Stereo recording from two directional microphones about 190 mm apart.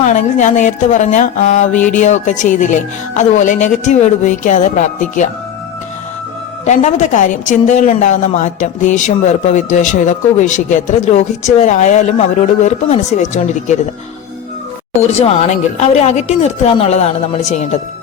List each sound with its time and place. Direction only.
0.0 s a woman's voice: 40° left (ahead or behind)
6.7 s a woman's voice: 40° left (ahead or behind)
15.0 s a woman's voice: 35° left (ahead or behind)